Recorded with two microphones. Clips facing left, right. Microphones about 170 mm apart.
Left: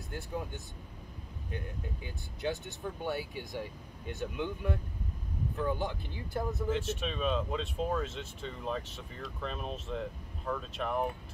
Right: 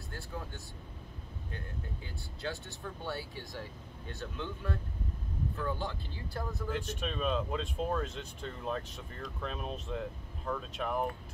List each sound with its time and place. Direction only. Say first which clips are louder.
0.1 s speech: left 5 dB; 20° left (ahead or behind)
2.0 s speech: left 5 dB; 20° left (ahead or behind)
6.7 s speech: left 1 dB; centre (ahead or behind)